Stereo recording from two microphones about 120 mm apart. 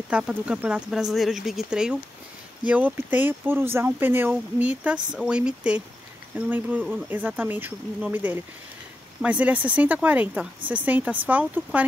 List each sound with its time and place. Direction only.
0.1 s speech: 10° right (ahead or behind)